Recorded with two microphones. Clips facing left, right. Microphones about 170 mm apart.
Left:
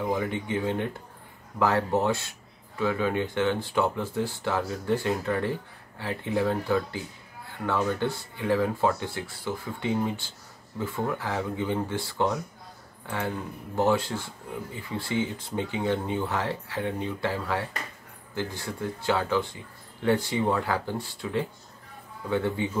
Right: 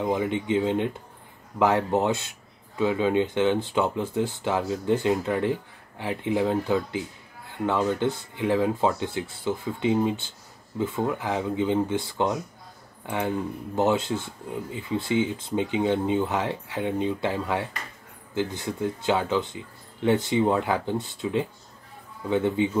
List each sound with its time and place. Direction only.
0.0 s speech: 20° right (ahead or behind)
13.7 s speech: 20° right (ahead or behind)